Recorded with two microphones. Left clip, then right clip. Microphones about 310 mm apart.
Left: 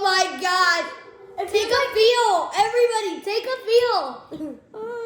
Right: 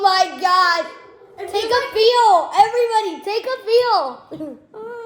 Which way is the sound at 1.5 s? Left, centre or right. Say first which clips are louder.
Right 2 dB; centre.